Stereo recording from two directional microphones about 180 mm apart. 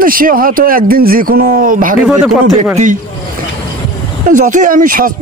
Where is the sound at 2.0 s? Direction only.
5° right (ahead or behind).